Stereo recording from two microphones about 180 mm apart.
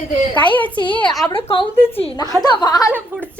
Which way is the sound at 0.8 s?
25° left (ahead or behind).